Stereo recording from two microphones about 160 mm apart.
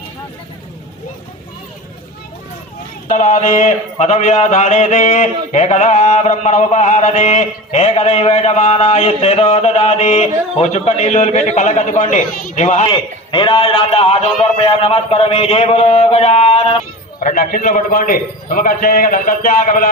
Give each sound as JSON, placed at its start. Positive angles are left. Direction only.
{"t": 3.1, "sound": "speech", "side_deg": 50}
{"t": 12.9, "sound": "a man's voice", "side_deg": 30}
{"t": 17.2, "sound": "a man's voice", "side_deg": 60}